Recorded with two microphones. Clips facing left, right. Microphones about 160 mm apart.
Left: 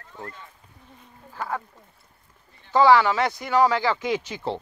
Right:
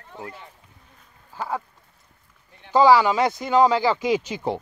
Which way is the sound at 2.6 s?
15° right (ahead or behind).